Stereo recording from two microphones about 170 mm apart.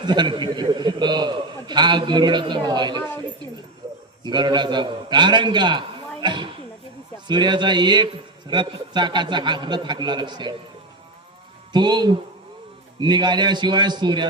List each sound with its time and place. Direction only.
0.0 s a man's voice: 25° right (ahead or behind)
4.2 s a man's voice: 25° right (ahead or behind)
11.7 s a man's voice: 25° right (ahead or behind)